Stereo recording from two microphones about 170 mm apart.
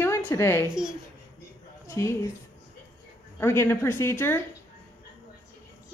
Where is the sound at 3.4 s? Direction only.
15° left (ahead or behind).